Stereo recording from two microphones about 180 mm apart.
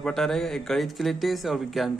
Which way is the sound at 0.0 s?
Centre (ahead or behind).